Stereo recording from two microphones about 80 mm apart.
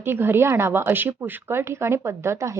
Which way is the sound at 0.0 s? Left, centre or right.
Right.